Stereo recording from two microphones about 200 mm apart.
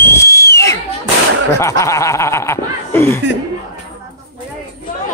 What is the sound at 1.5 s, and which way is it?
Speech, 15° left (ahead or behind).